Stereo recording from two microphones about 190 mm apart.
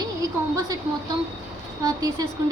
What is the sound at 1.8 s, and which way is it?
Speech, 20° right (ahead or behind).